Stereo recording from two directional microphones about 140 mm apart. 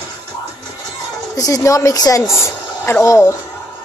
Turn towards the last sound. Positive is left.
turn(degrees=20)  # may be behind; listen again after turning